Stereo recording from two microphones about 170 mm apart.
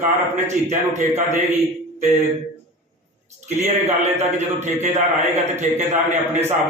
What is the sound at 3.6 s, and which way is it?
A man's voice, 40° right (ahead or behind).